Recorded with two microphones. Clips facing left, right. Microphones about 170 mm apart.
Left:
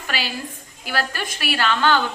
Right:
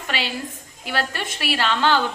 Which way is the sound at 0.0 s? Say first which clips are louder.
Right 1 dB; 25° right (ahead or behind).